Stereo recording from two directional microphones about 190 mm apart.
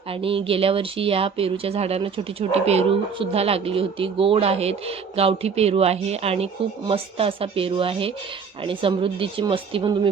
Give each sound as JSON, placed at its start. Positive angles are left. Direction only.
{"t": 0.1, "sound": "speech", "side_deg": -30}